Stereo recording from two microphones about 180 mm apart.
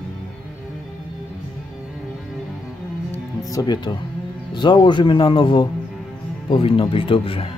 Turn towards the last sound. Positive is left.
turn(degrees=30)  # may be behind; listen again after turning